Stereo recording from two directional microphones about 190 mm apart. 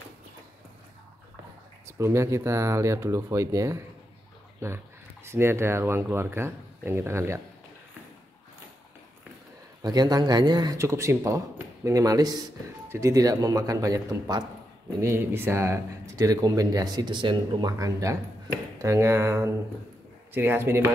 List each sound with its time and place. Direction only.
1.9 s speech: 15° right (ahead or behind)
9.8 s speech: 20° right (ahead or behind)